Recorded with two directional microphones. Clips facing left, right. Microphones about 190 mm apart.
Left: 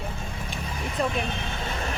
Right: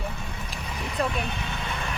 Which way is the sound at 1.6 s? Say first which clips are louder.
Left 3 dB; 40° left (ahead or behind).